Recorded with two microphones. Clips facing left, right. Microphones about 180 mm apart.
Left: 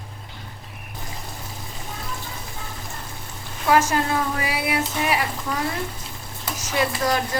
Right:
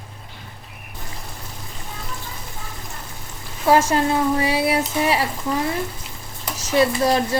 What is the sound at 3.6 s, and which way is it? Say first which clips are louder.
A woman's voice: right 3 dB; 30° right (ahead or behind).